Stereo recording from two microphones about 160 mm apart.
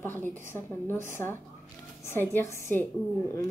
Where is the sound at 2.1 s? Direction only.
15° left (ahead or behind).